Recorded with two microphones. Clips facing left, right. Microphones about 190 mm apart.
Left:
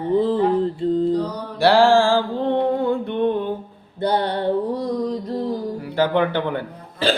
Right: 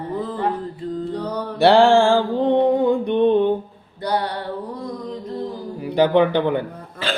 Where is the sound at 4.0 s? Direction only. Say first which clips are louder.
Left 3 dB; 25° left (ahead or behind).